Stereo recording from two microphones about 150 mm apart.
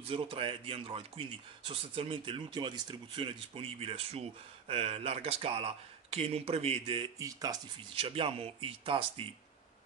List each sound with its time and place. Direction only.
0.1 s speech: 35° right (ahead or behind)
7.2 s speech: 25° right (ahead or behind)
8.0 s speech: 40° right (ahead or behind)